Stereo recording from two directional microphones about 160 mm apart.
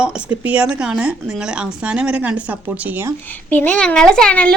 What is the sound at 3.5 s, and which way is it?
A child's voice, 10° left (ahead or behind).